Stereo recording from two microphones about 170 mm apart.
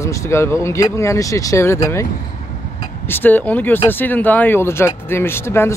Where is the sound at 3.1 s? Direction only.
10° left (ahead or behind).